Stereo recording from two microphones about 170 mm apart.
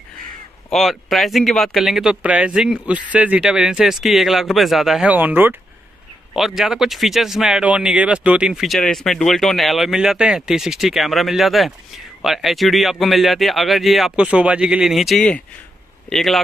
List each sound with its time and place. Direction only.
0.7 s speech: centre (ahead or behind)